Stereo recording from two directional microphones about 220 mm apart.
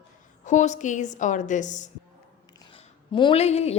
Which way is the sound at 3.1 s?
20° left (ahead or behind).